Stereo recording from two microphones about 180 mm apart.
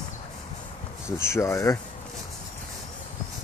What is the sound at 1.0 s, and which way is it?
Speech, 15° left (ahead or behind).